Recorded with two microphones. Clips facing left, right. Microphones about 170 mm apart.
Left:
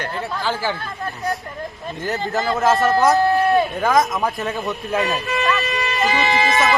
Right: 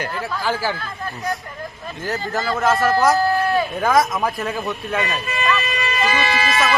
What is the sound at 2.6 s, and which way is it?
Speech, centre (ahead or behind).